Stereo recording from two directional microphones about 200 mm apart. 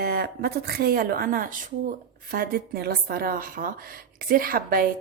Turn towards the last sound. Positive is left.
turn(degrees=-45)  # may be behind; listen again after turning